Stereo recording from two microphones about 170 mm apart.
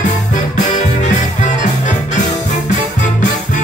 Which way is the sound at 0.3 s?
45° left (ahead or behind).